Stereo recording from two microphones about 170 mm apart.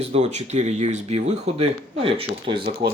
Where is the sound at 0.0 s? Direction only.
40° right (ahead or behind).